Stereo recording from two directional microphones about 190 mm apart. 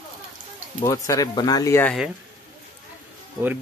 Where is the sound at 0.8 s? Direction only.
15° left (ahead or behind).